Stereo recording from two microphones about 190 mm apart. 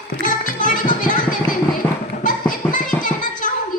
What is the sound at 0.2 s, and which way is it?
Music, 45° left (ahead or behind).